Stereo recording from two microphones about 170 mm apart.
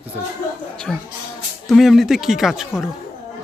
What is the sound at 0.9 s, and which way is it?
A man's voice, 5° left (ahead or behind).